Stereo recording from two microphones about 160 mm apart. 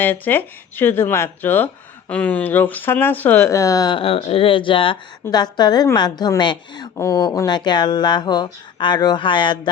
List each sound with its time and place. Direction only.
0.0 s a woman's voice: 15° left (ahead or behind); by 9.6 s 30° left (ahead or behind)